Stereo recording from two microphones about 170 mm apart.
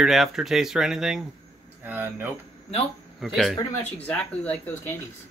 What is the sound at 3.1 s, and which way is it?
Speech, centre (ahead or behind).